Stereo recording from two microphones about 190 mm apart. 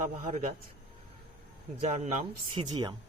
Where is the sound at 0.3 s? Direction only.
40° right (ahead or behind).